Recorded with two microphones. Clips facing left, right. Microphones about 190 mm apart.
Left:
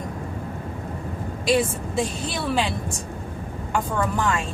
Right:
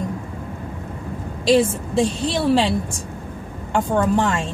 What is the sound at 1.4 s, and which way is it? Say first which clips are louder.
A woman's voice: right 5 dB; 25° right (ahead or behind).